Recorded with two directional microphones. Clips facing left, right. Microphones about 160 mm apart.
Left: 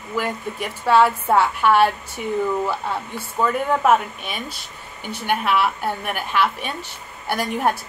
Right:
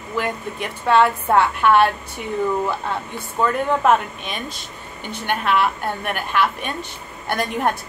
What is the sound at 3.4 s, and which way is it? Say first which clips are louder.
A woman's voice: even; 10° left (ahead or behind).